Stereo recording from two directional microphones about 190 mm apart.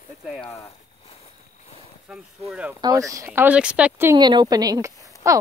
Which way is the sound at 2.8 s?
20° right (ahead or behind).